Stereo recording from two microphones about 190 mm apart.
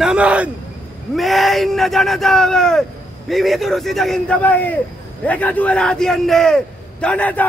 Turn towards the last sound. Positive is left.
turn(degrees=5)  # may be behind; listen again after turning